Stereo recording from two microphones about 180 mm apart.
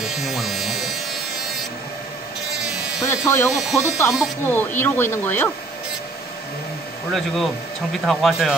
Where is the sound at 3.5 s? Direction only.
Centre (ahead or behind).